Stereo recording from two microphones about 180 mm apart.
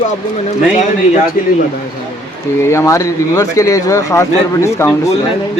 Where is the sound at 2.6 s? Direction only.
15° left (ahead or behind).